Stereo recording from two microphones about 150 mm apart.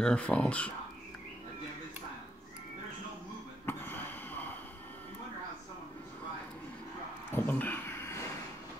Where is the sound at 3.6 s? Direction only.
15° left (ahead or behind).